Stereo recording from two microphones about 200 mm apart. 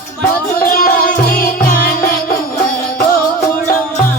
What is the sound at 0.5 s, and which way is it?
Music, 45° left (ahead or behind).